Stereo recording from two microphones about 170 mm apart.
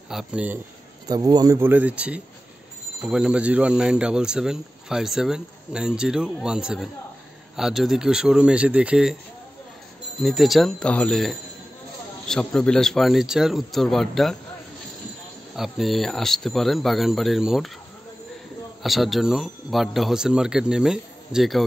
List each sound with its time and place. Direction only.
0.1 s speech: 5° right (ahead or behind)
1.0 s speech: 25° right (ahead or behind); by 9.1 s 5° right (ahead or behind)
10.2 s speech: centre (ahead or behind)
15.5 s speech: centre (ahead or behind)
18.8 s speech: centre (ahead or behind)